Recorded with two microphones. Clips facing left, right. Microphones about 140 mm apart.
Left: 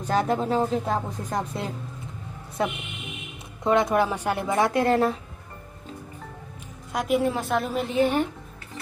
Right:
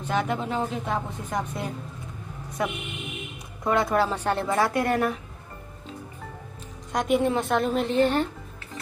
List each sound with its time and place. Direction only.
0.0 s a woman's voice: 35° left (ahead or behind)
6.9 s a woman's voice: 5° left (ahead or behind)